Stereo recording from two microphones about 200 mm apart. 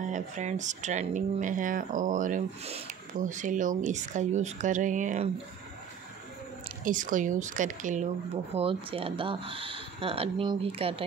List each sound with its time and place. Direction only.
0.1 s speech: 35° right (ahead or behind)
6.8 s speech: 40° right (ahead or behind)